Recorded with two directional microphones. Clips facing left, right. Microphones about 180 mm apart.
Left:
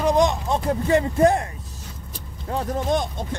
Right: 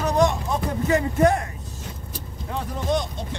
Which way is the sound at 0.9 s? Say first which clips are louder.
Left 2 dB; 30° left (ahead or behind).